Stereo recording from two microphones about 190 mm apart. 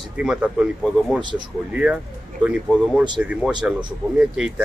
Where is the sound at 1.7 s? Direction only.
5° right (ahead or behind).